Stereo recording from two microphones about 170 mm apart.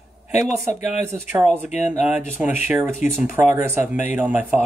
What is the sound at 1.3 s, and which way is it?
Speech, 10° right (ahead or behind).